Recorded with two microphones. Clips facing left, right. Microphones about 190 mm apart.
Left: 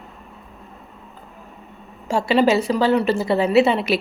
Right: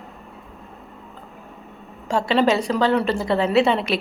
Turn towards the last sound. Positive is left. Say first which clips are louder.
# left 2 dB
turn(degrees=5)  # may be behind; listen again after turning